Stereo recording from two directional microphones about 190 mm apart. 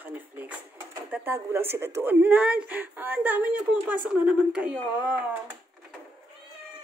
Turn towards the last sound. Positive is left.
turn(degrees=-10)  # may be behind; listen again after turning